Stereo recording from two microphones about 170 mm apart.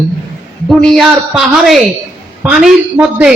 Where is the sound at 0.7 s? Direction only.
Centre (ahead or behind).